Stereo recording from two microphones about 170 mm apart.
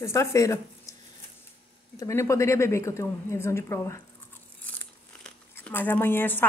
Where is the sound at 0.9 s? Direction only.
20° left (ahead or behind).